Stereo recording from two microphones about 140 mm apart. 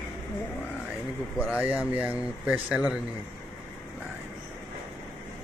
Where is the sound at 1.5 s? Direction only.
10° right (ahead or behind).